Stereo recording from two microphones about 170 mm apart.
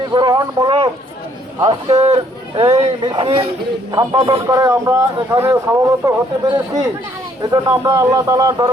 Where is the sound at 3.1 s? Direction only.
30° right (ahead or behind).